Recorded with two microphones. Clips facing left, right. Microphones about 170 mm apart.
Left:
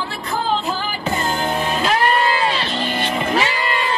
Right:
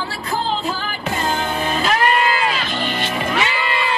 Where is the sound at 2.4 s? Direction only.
35° left (ahead or behind).